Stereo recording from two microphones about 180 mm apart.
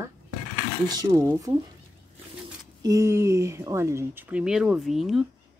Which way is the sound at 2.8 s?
20° right (ahead or behind).